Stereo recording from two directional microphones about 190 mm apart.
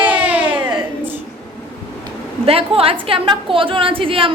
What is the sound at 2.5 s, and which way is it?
A woman's voice, 30° right (ahead or behind).